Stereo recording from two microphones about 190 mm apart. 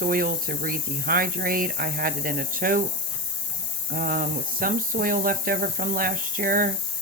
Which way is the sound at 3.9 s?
50° right (ahead or behind).